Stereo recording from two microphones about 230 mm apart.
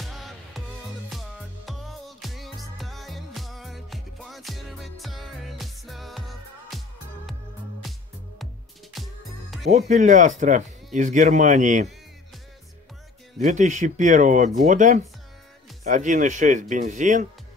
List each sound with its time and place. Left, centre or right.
0.0 s music: centre
7.8 s music: centre
9.7 s speech: right
13.4 s speech: right